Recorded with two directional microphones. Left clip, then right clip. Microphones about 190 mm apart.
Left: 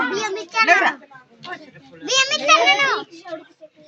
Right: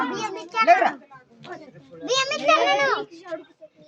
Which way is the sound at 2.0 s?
50° right (ahead or behind).